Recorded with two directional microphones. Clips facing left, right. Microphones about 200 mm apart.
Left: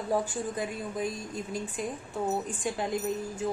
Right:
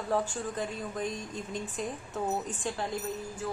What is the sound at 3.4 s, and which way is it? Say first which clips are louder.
Music: left 4 dB; 20° left (ahead or behind).